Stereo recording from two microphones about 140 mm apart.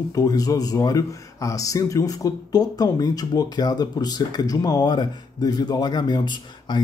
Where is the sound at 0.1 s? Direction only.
25° left (ahead or behind).